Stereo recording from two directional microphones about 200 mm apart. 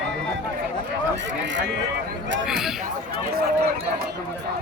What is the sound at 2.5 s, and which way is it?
Speech, centre (ahead or behind).